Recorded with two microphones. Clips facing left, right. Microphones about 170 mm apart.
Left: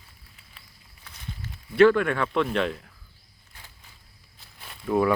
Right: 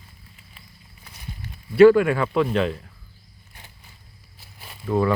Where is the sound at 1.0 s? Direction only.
10° right (ahead or behind).